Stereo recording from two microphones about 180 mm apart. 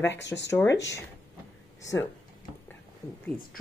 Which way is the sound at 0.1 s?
75° left (ahead or behind).